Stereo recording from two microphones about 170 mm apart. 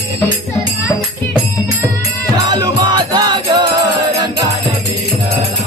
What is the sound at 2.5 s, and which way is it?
Music, 25° right (ahead or behind).